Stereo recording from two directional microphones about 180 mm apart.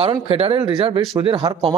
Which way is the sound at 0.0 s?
30° right (ahead or behind).